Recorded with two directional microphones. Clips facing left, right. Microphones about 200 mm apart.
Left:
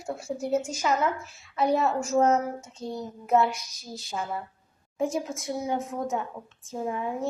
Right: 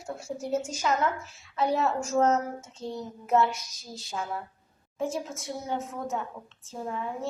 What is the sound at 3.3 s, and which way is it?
A woman's voice, centre (ahead or behind).